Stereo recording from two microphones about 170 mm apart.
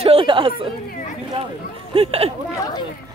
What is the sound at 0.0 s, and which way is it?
Speech, 35° right (ahead or behind).